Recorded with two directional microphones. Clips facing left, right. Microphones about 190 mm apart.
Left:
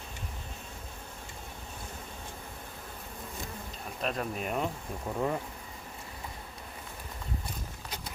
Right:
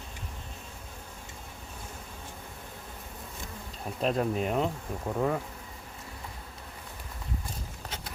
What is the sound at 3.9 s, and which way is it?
Speech, 30° right (ahead or behind).